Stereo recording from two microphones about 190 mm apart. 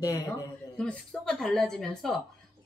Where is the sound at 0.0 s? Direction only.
20° left (ahead or behind).